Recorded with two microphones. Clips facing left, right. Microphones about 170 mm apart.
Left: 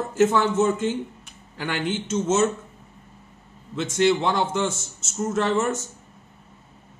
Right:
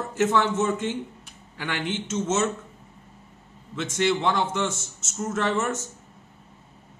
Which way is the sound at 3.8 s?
35° left (ahead or behind).